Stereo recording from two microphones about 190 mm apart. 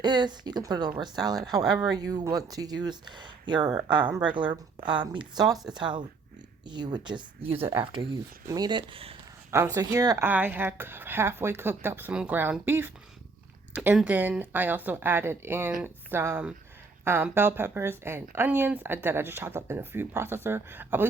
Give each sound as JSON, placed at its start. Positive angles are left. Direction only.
{"t": 0.0, "sound": "a woman's voice", "side_deg": -20}
{"t": 4.0, "sound": "speech", "side_deg": -10}
{"t": 4.9, "sound": "a woman's voice", "side_deg": -25}
{"t": 9.5, "sound": "speech", "side_deg": -15}